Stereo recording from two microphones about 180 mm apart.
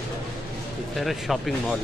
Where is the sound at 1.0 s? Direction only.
Centre (ahead or behind).